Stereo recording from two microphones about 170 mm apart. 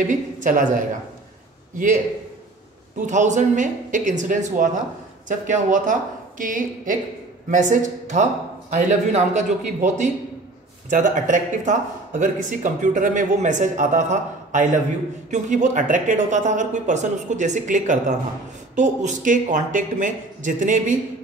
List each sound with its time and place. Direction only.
0.0 s speech: 50° right (ahead or behind)
3.1 s speech: 45° right (ahead or behind)